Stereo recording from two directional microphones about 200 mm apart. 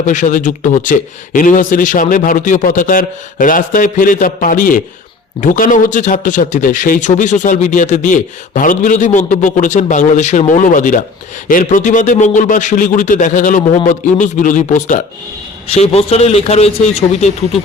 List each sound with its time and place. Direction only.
0.0 s a man's voice: 40° left (ahead or behind)